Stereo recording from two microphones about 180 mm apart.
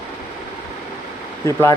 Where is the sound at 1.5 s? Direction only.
15° left (ahead or behind).